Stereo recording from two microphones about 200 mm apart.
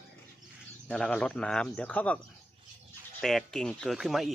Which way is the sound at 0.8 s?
5° left (ahead or behind).